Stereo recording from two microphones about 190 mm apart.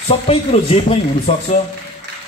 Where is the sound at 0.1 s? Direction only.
30° left (ahead or behind).